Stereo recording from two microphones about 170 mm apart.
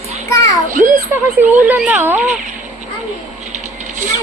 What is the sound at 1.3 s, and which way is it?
Speech, 10° right (ahead or behind).